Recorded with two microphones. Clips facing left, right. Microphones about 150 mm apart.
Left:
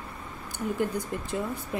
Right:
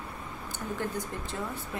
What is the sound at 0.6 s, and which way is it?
Speech, 10° left (ahead or behind).